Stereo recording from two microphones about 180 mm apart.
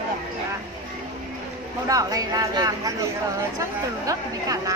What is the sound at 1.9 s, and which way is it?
A woman's voice, 20° right (ahead or behind).